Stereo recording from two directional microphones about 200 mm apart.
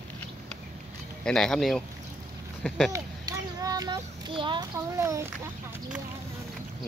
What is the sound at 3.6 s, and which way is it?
A child's voice, 20° right (ahead or behind).